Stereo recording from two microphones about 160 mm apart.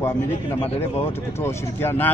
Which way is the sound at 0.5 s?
40° left (ahead or behind).